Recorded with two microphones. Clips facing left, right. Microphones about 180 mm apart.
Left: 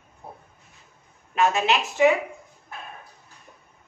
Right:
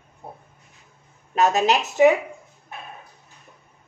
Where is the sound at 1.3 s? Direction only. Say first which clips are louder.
Right 3 dB; 40° right (ahead or behind).